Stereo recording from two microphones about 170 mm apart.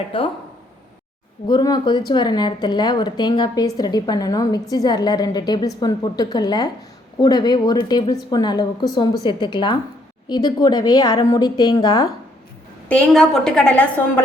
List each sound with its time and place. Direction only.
0.1 s speech: 30° left (ahead or behind)
1.5 s speech: 25° left (ahead or behind)
12.9 s a woman's voice: 5° left (ahead or behind)